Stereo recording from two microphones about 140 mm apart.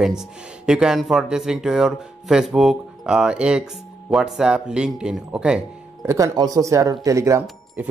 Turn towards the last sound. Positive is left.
turn(degrees=-20)  # may be behind; listen again after turning